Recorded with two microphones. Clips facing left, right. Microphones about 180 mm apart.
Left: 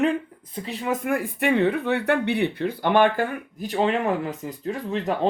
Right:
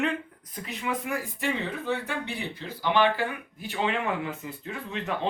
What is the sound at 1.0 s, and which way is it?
Speech, 60° left (ahead or behind).